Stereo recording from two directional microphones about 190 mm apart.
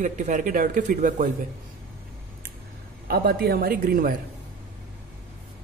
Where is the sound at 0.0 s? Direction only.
40° right (ahead or behind).